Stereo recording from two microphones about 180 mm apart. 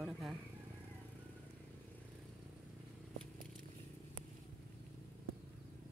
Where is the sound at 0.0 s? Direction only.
5° right (ahead or behind).